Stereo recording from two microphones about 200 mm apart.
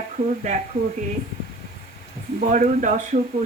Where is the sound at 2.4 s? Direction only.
40° right (ahead or behind).